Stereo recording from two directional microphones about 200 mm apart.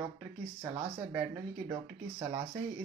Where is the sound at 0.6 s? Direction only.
15° right (ahead or behind).